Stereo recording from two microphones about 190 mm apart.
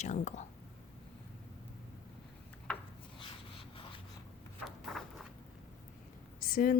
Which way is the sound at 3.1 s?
25° left (ahead or behind).